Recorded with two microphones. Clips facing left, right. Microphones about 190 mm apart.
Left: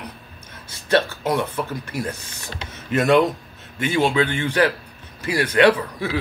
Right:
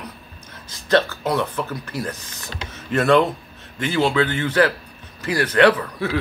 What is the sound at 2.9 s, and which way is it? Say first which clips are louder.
A man's voice: even; 10° left (ahead or behind).